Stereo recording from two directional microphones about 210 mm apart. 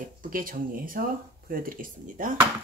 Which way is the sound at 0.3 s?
40° right (ahead or behind).